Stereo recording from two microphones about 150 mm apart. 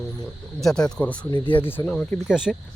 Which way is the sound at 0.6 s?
5° left (ahead or behind).